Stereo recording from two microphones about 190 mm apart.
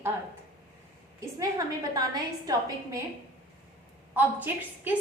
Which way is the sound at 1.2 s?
15° right (ahead or behind).